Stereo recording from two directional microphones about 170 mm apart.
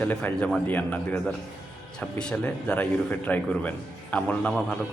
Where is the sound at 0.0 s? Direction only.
10° left (ahead or behind).